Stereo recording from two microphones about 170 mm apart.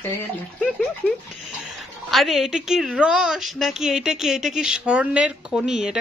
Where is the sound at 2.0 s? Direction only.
Centre (ahead or behind).